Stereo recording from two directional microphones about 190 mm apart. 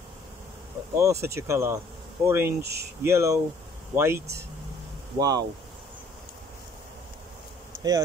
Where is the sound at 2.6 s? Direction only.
60° right (ahead or behind).